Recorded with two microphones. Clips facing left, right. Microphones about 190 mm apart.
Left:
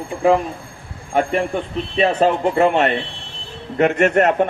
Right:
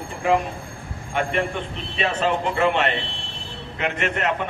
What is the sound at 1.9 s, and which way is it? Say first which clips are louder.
Speech: left 7 dB; 40° left (ahead or behind).